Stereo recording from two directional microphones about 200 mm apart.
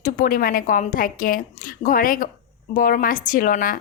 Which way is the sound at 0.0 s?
40° left (ahead or behind).